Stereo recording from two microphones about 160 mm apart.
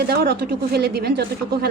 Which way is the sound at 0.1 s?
80° right.